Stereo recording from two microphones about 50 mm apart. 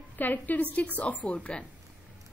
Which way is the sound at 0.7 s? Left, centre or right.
Left.